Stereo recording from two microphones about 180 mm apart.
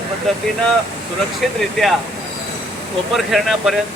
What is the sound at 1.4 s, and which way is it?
Speech, centre (ahead or behind).